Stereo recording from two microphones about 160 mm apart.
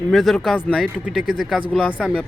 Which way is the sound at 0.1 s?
Centre (ahead or behind).